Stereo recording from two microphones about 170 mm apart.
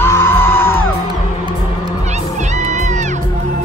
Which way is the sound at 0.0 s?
15° left (ahead or behind).